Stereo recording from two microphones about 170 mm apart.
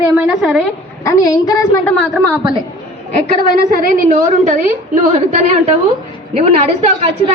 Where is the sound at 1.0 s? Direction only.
20° left (ahead or behind).